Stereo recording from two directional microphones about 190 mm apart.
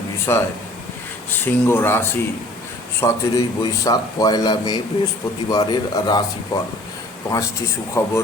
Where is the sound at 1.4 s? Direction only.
10° left (ahead or behind).